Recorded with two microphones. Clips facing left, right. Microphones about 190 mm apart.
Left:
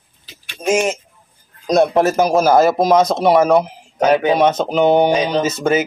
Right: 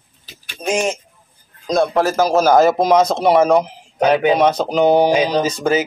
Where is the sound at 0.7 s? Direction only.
5° left (ahead or behind).